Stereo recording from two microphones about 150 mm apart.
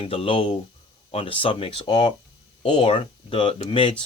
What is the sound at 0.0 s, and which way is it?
Speech, 40° left (ahead or behind).